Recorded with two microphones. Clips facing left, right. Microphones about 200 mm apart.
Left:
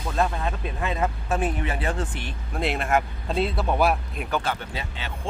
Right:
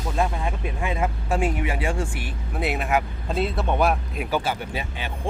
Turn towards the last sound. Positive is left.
turn(degrees=-15)  # may be behind; listen again after turning